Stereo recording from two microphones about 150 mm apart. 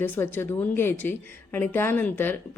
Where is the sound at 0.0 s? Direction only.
15° left (ahead or behind).